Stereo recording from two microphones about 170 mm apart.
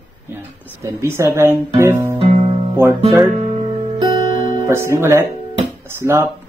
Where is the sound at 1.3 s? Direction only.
15° right (ahead or behind).